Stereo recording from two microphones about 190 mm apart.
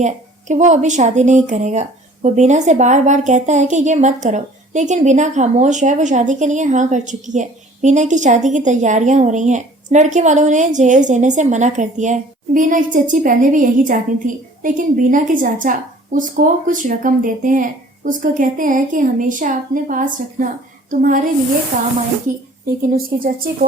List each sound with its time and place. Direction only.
0.0 s a woman's voice: 40° right (ahead or behind)